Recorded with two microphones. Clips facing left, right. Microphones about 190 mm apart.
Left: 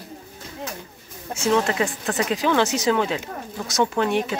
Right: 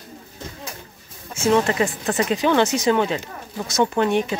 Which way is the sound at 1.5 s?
Centre (ahead or behind).